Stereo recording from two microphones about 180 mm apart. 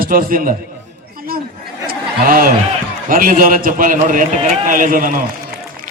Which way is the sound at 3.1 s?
50° right (ahead or behind).